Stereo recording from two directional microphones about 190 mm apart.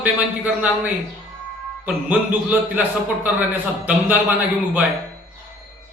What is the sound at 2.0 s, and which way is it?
A man's voice, 10° right (ahead or behind).